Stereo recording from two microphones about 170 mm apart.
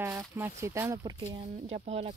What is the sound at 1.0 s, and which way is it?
Speech, 30° right (ahead or behind).